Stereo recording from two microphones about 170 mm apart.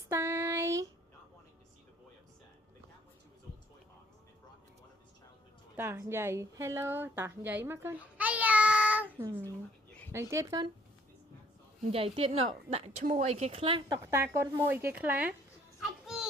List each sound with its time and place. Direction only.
0.1 s child singing: 15° right (ahead or behind)
5.7 s a woman's voice: 15° right (ahead or behind)
11.9 s a woman's voice: 35° right (ahead or behind)
14.0 s speech: 15° right (ahead or behind)